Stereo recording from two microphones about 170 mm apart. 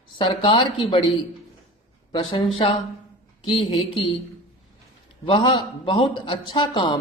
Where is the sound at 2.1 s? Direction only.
30° left (ahead or behind).